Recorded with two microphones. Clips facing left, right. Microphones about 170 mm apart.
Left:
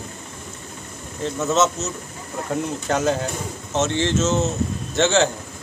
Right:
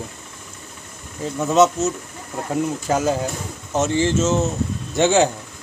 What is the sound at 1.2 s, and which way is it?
Speech, 15° right (ahead or behind).